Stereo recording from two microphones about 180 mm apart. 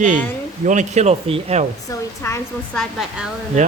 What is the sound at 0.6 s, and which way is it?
Speech, 45° right (ahead or behind).